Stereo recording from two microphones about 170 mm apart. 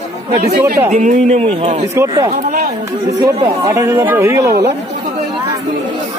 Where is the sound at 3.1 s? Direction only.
20° right (ahead or behind).